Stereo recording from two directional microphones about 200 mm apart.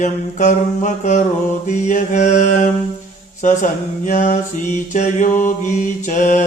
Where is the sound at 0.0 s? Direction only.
40° left (ahead or behind).